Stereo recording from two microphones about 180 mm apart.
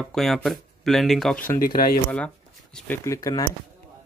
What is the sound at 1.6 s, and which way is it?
Speech, 55° left (ahead or behind).